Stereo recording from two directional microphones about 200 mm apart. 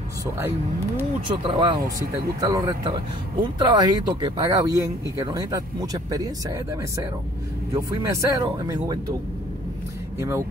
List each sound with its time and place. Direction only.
1.3 s speech: 20° right (ahead or behind)
7.7 s speech: 15° right (ahead or behind)
10.1 s speech: 15° right (ahead or behind)